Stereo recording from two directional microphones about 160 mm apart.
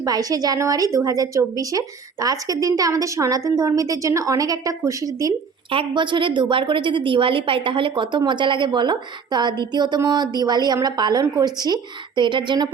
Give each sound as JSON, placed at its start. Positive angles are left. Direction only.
{"t": 0.0, "sound": "a woman's voice", "side_deg": -20}